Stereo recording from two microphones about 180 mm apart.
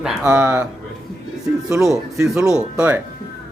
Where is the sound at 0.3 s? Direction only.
10° right (ahead or behind).